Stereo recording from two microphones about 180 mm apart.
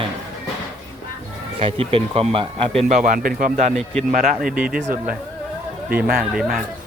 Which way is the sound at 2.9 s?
45° right (ahead or behind).